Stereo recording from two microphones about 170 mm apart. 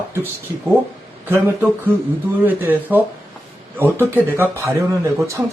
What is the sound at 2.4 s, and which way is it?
Speech, 10° right (ahead or behind).